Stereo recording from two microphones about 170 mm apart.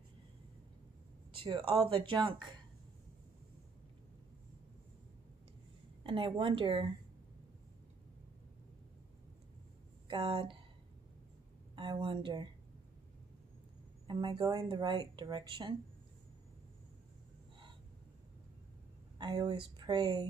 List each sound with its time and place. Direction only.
1.3 s speech: 30° right (ahead or behind)
6.0 s speech: 30° right (ahead or behind)
10.0 s speech: 30° right (ahead or behind)
11.7 s a woman's voice: 30° right (ahead or behind)
14.0 s speech: 25° right (ahead or behind)
19.1 s speech: 25° right (ahead or behind)